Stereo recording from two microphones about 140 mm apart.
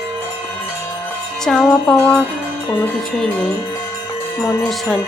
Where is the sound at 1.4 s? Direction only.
5° left (ahead or behind).